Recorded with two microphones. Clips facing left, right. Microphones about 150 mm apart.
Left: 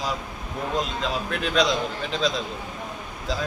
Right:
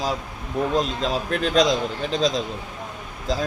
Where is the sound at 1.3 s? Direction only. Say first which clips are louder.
Right 4 dB; 40° right (ahead or behind).